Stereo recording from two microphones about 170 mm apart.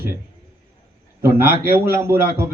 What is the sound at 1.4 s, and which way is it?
A man's voice, 15° right (ahead or behind).